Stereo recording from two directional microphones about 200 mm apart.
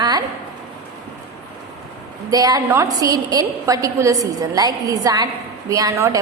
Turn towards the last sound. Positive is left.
turn(degrees=-15)  # may be behind; listen again after turning